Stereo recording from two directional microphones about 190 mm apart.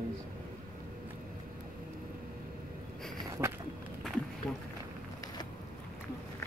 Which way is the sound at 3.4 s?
15° right (ahead or behind).